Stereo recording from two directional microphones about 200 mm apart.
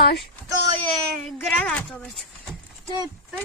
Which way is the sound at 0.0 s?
55° left (ahead or behind).